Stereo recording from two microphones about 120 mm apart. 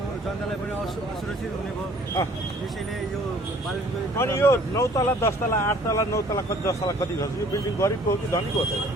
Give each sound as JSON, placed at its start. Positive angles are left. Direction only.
{"t": 4.2, "sound": "speech", "side_deg": 20}